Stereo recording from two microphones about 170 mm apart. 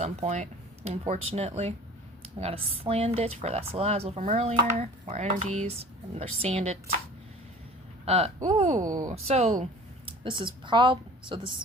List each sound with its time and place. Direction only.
0.0 s speech: 40° right (ahead or behind)
8.0 s speech: 35° right (ahead or behind)
8.8 s speech: 20° right (ahead or behind)
9.0 s speech: 40° right (ahead or behind)
10.1 s a woman's voice: 30° right (ahead or behind)